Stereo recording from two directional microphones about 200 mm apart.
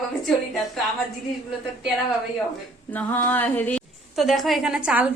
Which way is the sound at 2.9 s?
10° left (ahead or behind).